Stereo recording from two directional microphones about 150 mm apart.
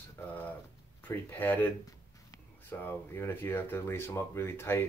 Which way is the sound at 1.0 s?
10° left (ahead or behind).